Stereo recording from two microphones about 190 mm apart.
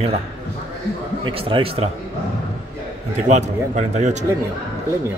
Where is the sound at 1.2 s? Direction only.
30° right (ahead or behind).